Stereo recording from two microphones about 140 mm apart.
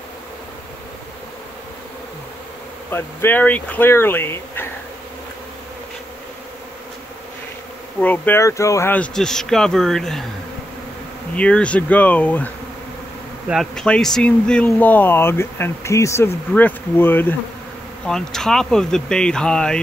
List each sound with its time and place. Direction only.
2.9 s speech: 15° left (ahead or behind)
8.0 s speech: 15° left (ahead or behind)
11.3 s speech: 10° left (ahead or behind)